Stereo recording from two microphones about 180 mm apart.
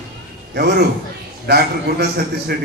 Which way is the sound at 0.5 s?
60° right (ahead or behind).